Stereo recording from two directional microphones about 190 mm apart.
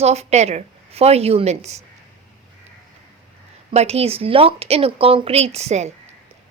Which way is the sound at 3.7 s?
35° right (ahead or behind).